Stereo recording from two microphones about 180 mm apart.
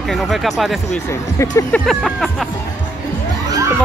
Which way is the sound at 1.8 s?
Centre (ahead or behind).